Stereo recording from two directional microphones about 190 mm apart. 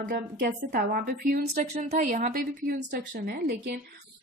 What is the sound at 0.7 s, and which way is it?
A woman's voice, 50° right (ahead or behind).